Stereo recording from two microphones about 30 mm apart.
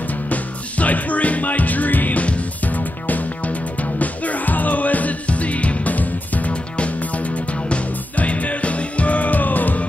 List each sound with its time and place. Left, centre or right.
0.3 s music: left
2.1 s music: left
2.6 s music: left
6.5 s music: left
7.0 s music: left